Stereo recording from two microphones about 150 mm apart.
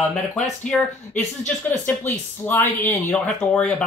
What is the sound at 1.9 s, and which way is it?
Speech, 15° left (ahead or behind).